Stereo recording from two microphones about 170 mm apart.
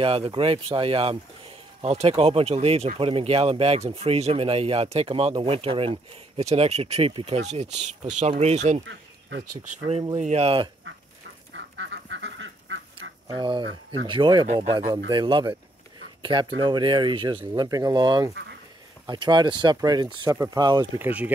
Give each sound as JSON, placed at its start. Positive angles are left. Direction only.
{"t": 0.0, "sound": "speech", "side_deg": -35}
{"t": 11.5, "sound": "duck", "side_deg": -90}
{"t": 13.4, "sound": "speech", "side_deg": -25}
{"t": 21.0, "sound": "speech", "side_deg": -10}